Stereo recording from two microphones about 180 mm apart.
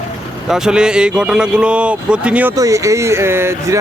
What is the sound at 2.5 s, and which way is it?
Speech, 20° right (ahead or behind).